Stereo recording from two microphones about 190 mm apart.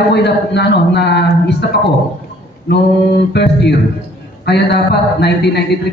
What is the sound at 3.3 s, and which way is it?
A man's voice, 60° left (ahead or behind).